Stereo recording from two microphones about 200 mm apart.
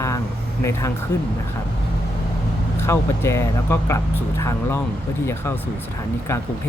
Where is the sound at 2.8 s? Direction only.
15° left (ahead or behind).